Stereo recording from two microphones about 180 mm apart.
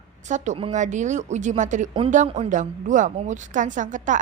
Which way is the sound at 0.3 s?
40° right (ahead or behind).